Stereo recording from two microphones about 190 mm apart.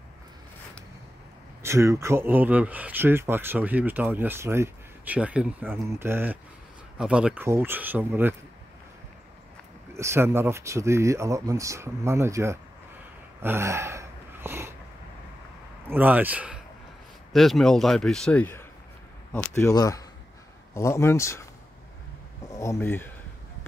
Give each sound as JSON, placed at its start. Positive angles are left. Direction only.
{"t": 1.6, "sound": "speech", "side_deg": -15}
{"t": 9.9, "sound": "speech", "side_deg": -15}
{"t": 13.4, "sound": "a sound", "side_deg": -15}
{"t": 15.9, "sound": "speech", "side_deg": -10}
{"t": 22.5, "sound": "speech", "side_deg": 15}